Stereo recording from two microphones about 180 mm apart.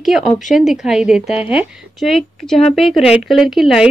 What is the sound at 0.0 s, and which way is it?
Speech, centre (ahead or behind).